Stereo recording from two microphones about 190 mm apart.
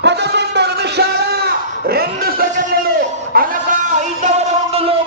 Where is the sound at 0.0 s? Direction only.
65° right (ahead or behind).